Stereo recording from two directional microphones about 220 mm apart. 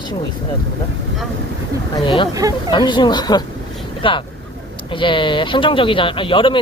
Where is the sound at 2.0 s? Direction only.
20° left (ahead or behind).